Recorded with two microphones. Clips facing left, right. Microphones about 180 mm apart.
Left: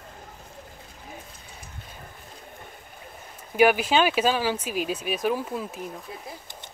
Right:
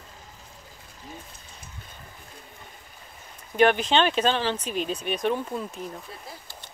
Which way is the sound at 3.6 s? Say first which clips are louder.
Left 1 dB; 5° left (ahead or behind).